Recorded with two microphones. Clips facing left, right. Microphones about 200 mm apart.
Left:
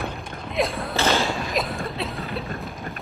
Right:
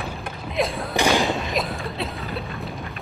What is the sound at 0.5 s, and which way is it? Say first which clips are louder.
Thump: even; centre (ahead or behind).